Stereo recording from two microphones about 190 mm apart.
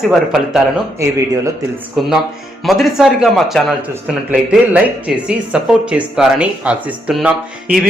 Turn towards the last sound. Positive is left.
turn(degrees=-5)  # may be behind; listen again after turning